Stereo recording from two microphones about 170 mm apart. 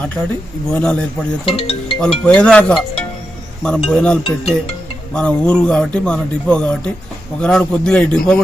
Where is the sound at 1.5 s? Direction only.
30° left (ahead or behind).